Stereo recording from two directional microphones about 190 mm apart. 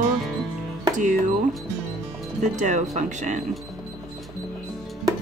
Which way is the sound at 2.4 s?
40° right (ahead or behind).